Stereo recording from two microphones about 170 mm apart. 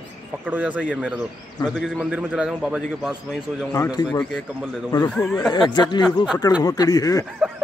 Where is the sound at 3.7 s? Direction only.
20° left (ahead or behind).